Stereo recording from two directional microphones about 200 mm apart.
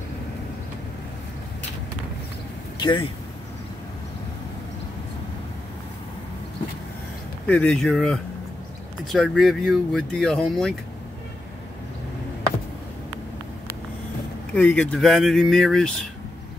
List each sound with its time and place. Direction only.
2.8 s speech: 25° left (ahead or behind)
7.4 s speech: 5° left (ahead or behind)
14.5 s speech: 5° left (ahead or behind)